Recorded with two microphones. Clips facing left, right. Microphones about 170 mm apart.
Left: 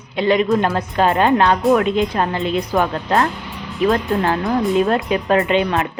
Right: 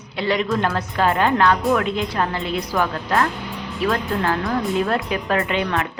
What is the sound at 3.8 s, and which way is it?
A woman's voice, 20° left (ahead or behind).